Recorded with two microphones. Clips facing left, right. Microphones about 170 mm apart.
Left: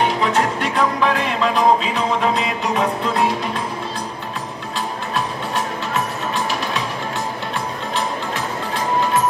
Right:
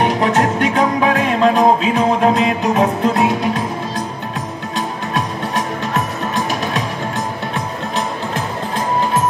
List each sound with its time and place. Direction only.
0.0 s music: 45° right (ahead or behind)